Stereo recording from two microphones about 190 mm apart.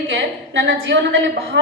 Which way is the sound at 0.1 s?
75° right (ahead or behind).